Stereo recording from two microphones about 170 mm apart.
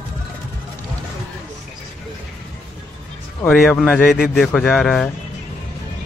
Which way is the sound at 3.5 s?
Centre (ahead or behind).